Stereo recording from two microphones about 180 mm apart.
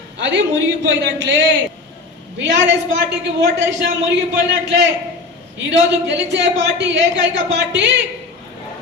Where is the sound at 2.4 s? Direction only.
90° right.